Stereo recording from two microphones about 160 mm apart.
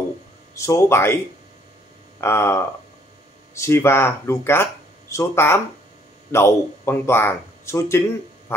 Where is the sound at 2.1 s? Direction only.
15° left (ahead or behind).